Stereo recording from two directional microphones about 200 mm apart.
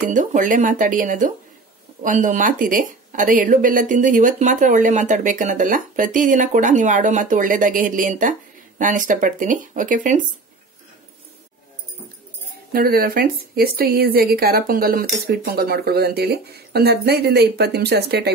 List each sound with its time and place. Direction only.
0.1 s speech: 40° right (ahead or behind)
12.7 s a woman's voice: 50° right (ahead or behind)